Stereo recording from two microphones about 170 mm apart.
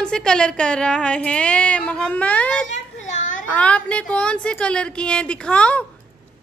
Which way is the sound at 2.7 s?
45° left (ahead or behind).